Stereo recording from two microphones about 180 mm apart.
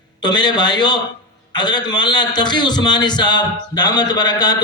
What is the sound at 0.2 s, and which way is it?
A man's voice, 25° left (ahead or behind).